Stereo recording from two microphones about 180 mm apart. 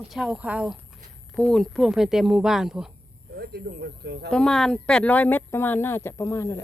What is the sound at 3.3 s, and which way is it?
Speech, 60° right (ahead or behind).